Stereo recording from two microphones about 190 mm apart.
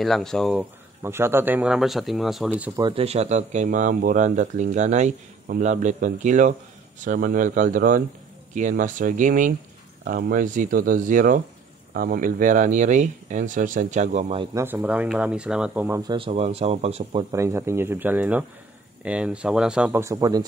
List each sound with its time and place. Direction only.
0.0 s speech: centre (ahead or behind)
1.0 s speech: 10° right (ahead or behind)
2.7 s speech: 25° right (ahead or behind)
14.4 s speech: 15° right (ahead or behind)
16.0 s speech: 25° right (ahead or behind)
17.3 s speech: 15° right (ahead or behind)